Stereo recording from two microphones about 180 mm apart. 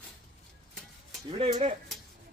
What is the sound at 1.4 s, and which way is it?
Speech, 35° right (ahead or behind).